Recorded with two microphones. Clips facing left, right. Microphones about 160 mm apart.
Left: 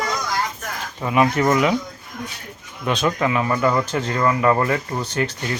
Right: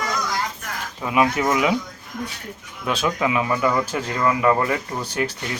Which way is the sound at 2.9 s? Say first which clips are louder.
Left 2 dB; 5° right (ahead or behind).